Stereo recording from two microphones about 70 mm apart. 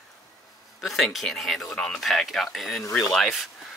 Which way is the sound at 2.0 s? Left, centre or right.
Centre.